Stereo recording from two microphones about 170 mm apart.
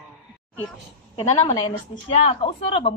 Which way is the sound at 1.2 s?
30° left (ahead or behind).